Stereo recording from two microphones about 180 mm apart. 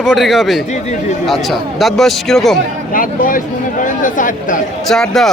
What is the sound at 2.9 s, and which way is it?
Speech, 50° left (ahead or behind).